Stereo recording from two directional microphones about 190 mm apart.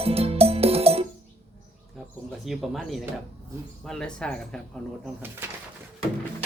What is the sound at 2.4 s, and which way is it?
Speech, centre (ahead or behind).